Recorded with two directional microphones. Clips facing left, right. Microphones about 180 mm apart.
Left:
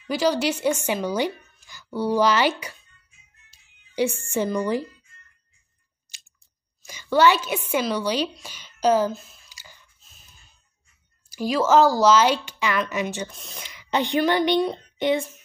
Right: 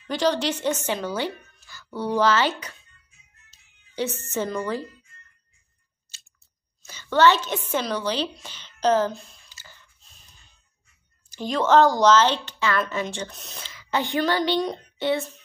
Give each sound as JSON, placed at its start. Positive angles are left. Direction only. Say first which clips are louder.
{"t": 0.0, "sound": "speech", "louder": "left 1 dB", "side_deg": 10}
{"t": 6.9, "sound": "speech", "louder": "even", "side_deg": 10}
{"t": 9.9, "sound": "a sound", "louder": "even", "side_deg": 0}
{"t": 11.2, "sound": "speech", "louder": "left 1 dB", "side_deg": 10}